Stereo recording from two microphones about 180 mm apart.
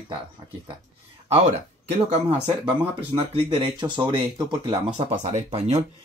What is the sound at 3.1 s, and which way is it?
Speech, 30° right (ahead or behind).